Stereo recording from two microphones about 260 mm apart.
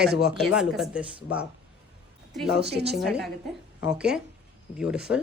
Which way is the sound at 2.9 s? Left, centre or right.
Centre.